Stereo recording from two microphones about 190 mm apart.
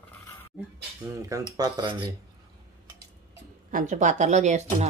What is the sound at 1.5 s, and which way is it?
Speech, 20° right (ahead or behind).